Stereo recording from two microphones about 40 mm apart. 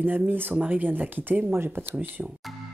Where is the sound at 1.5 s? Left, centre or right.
Right.